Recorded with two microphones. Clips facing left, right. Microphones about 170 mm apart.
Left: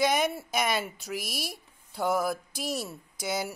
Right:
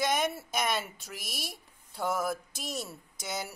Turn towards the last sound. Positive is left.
turn(degrees=5)  # may be behind; listen again after turning